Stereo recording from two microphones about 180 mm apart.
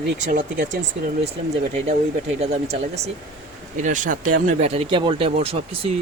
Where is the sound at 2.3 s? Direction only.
35° right (ahead or behind).